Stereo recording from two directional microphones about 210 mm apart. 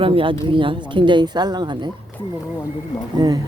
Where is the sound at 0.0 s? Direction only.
25° right (ahead or behind).